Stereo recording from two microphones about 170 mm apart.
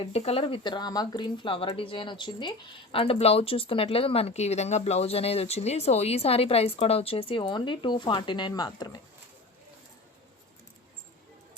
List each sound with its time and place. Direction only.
0.0 s speech: 35° left (ahead or behind)